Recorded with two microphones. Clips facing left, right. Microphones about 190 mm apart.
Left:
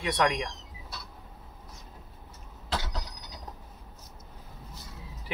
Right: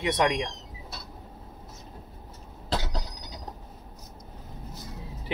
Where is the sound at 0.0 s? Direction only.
20° right (ahead or behind).